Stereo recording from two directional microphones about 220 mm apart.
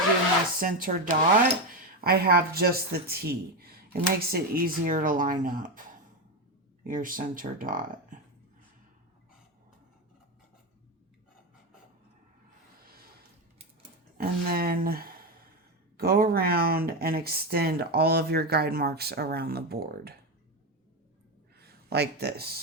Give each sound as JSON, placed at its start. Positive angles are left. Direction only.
{"t": 0.6, "sound": "speech", "side_deg": -40}
{"t": 6.8, "sound": "speech", "side_deg": -40}
{"t": 14.2, "sound": "speech", "side_deg": -40}
{"t": 21.6, "sound": "speech", "side_deg": -45}